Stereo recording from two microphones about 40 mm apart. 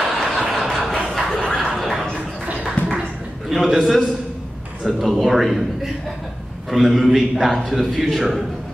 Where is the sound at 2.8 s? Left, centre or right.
Left.